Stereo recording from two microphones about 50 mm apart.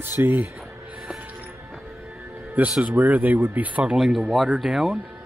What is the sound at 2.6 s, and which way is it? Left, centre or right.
Speech, right.